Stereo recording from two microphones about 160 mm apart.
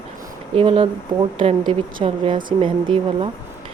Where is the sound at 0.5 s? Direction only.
35° right (ahead or behind).